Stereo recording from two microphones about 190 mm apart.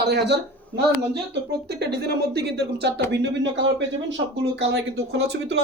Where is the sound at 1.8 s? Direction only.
60° right (ahead or behind).